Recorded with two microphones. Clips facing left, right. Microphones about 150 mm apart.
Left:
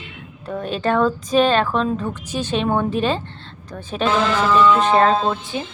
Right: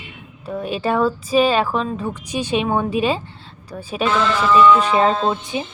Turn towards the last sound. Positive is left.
turn(degrees=-15)  # may be behind; listen again after turning